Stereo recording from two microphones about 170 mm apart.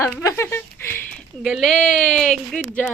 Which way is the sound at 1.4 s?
Centre (ahead or behind).